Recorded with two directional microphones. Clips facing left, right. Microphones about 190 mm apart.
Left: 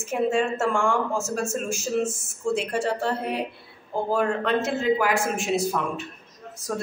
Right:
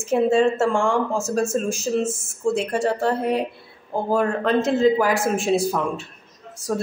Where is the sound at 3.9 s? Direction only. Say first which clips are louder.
Right 3 dB; 45° right (ahead or behind).